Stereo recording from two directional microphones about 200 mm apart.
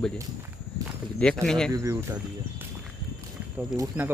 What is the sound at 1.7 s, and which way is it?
Speech, 15° right (ahead or behind).